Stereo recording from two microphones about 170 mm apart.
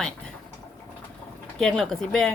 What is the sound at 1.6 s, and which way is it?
Speech, 5° left (ahead or behind).